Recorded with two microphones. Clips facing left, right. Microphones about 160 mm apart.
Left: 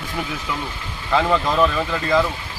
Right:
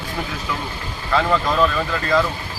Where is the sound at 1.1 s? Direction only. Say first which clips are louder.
Even; 15° left (ahead or behind).